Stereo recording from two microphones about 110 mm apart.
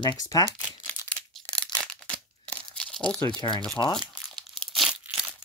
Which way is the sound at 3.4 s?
35° left (ahead or behind).